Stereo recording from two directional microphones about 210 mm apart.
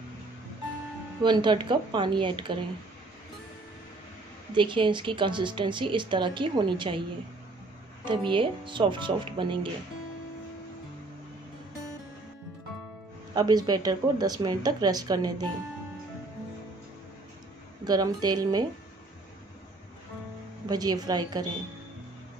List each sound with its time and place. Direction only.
1.2 s speech: 20° right (ahead or behind)
4.6 s speech: 25° right (ahead or behind)
8.0 s speech: 25° right (ahead or behind)
13.3 s speech: 20° right (ahead or behind)
17.8 s speech: 20° right (ahead or behind)
20.6 s speech: 20° right (ahead or behind)